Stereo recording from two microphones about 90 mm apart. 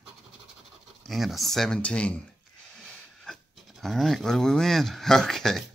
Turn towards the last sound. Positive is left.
turn(degrees=5)  # may be behind; listen again after turning